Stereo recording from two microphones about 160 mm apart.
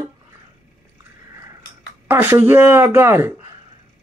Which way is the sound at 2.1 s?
15° right (ahead or behind).